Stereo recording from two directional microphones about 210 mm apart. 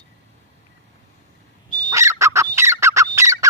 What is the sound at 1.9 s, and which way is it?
Fowl, 15° right (ahead or behind).